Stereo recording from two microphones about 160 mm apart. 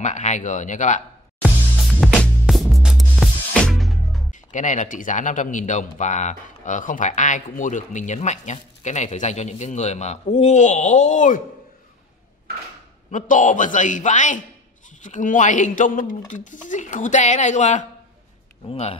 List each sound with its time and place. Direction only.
0.0 s speech: 50° left (ahead or behind)
1.4 s music: centre (ahead or behind)
4.5 s speech: 50° left (ahead or behind)
13.1 s speech: 50° left (ahead or behind)
18.7 s speech: 35° left (ahead or behind)